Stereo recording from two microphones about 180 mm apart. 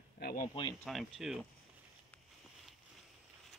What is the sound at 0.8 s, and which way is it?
Speech, centre (ahead or behind).